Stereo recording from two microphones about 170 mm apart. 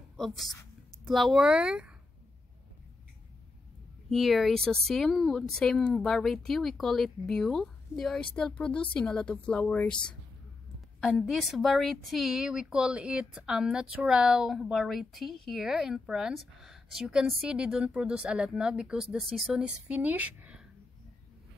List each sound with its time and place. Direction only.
0.5 s a sound: 20° left (ahead or behind)
1.0 s a woman's voice: centre (ahead or behind)
4.1 s a woman's voice: centre (ahead or behind)
11.0 s a woman's voice: 5° left (ahead or behind)